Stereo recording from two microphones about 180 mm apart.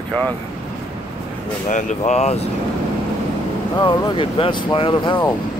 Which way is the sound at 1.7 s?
45° left (ahead or behind).